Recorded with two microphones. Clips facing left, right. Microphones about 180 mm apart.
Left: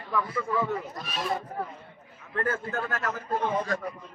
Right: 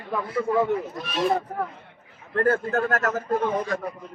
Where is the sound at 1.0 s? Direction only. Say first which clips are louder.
Right 7 dB; 60° right (ahead or behind).